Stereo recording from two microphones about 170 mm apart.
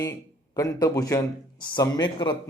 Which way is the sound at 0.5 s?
20° left (ahead or behind).